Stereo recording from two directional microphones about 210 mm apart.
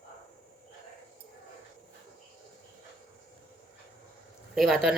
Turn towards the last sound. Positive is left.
turn(degrees=0)  # may be behind; listen again after turning